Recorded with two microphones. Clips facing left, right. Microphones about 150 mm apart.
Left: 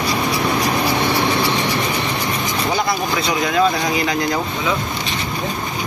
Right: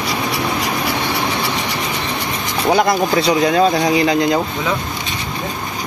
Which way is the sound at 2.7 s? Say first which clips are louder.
Right 8 dB; 45° right (ahead or behind).